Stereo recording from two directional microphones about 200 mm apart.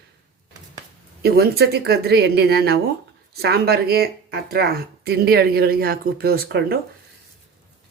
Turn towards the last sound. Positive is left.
turn(degrees=-50)  # may be behind; listen again after turning